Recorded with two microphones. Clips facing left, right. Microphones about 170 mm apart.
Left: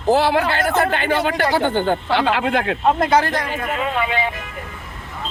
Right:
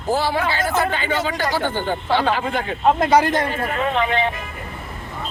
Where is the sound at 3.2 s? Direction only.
20° right (ahead or behind).